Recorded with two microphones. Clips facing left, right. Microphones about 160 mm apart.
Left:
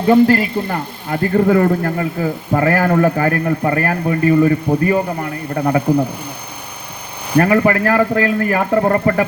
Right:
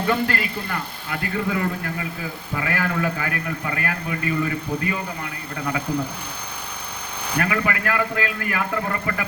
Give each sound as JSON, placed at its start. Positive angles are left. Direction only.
{"t": 0.0, "sound": "a man's voice", "side_deg": 30}
{"t": 7.3, "sound": "a man's voice", "side_deg": 40}